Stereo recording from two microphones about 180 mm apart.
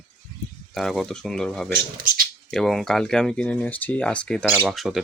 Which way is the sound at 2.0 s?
55° right (ahead or behind).